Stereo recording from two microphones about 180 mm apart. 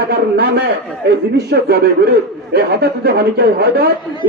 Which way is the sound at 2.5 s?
60° right (ahead or behind).